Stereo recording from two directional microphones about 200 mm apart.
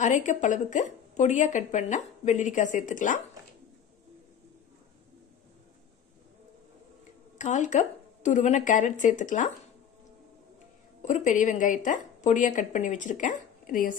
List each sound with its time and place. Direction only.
0.0 s a woman's voice: 35° left (ahead or behind)
7.3 s a woman's voice: 35° left (ahead or behind)
11.0 s a woman's voice: 40° left (ahead or behind)